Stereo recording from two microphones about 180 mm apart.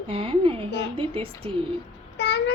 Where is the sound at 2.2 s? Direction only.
70° left (ahead or behind).